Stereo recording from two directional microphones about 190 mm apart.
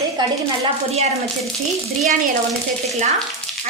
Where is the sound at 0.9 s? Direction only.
35° right (ahead or behind).